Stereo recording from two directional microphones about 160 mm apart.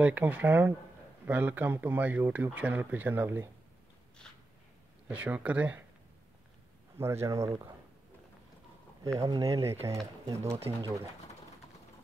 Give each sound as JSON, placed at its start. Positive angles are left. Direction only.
{"t": 0.0, "sound": "speech", "side_deg": -10}
{"t": 5.0, "sound": "speech", "side_deg": -10}
{"t": 7.0, "sound": "speech", "side_deg": -15}
{"t": 9.2, "sound": "speech", "side_deg": -20}